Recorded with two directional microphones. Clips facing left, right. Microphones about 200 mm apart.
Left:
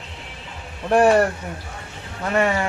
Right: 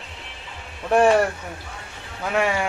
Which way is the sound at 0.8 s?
5° left (ahead or behind).